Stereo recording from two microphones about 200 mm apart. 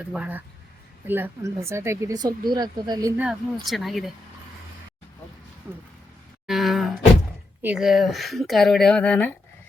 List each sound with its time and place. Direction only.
0.0 s speech: 5° right (ahead or behind)
3.7 s speech: centre (ahead or behind)
5.7 s speech: 10° right (ahead or behind)
6.5 s a sound: centre (ahead or behind)
7.6 s speech: 5° right (ahead or behind)